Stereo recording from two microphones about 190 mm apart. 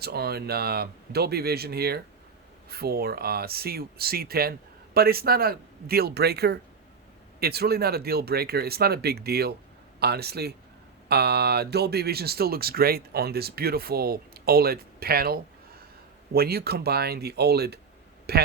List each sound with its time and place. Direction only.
0.0 s speech: 55° right (ahead or behind)